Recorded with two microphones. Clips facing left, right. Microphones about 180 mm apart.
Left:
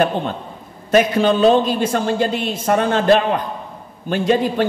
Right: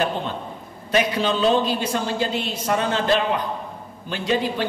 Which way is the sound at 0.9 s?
50° left (ahead or behind).